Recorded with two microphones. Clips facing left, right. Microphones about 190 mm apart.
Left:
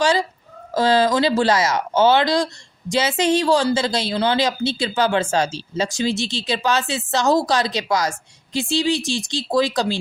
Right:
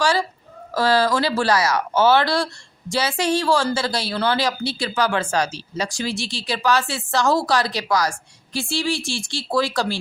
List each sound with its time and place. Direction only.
0.0 s a woman's voice: 20° left (ahead or behind)